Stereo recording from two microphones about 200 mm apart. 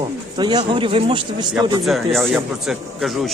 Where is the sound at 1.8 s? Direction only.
Centre (ahead or behind).